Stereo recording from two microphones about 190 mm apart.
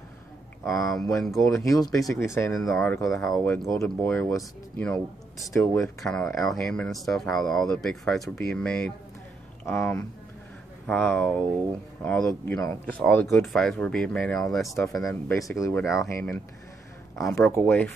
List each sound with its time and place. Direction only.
0.7 s speech: centre (ahead or behind)
15.0 s speech: 15° left (ahead or behind)
15.8 s speech: centre (ahead or behind)
16.2 s speech: 10° left (ahead or behind)